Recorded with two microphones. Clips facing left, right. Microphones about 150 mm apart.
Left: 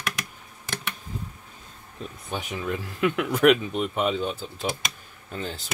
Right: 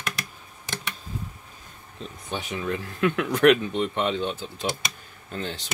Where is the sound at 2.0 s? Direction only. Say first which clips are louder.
Even; centre (ahead or behind).